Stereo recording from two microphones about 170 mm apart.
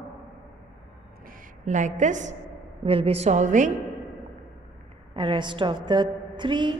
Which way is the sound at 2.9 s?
35° right (ahead or behind).